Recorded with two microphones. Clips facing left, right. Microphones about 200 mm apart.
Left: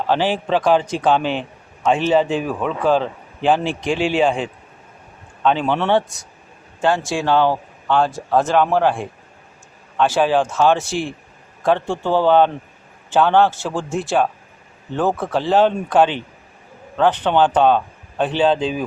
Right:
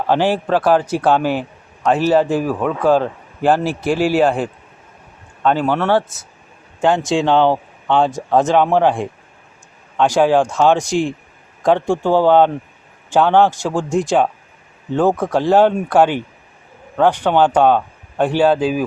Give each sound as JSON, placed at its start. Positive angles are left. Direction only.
{"t": 0.1, "sound": "speech", "side_deg": -10}
{"t": 6.8, "sound": "speech", "side_deg": -20}